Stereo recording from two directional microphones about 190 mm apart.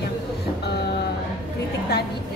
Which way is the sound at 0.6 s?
60° left (ahead or behind).